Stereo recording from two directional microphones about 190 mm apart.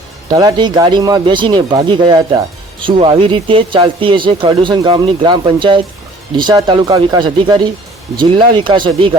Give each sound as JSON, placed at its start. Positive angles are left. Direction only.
{"t": 0.3, "sound": "speech", "side_deg": -20}